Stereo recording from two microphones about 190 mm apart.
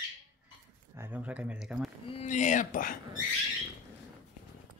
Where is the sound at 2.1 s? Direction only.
35° left (ahead or behind).